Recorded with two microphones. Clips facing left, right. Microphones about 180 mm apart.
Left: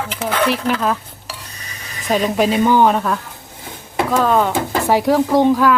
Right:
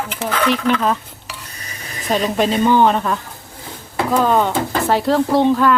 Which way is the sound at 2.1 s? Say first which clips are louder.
Left 1 dB; 5° left (ahead or behind).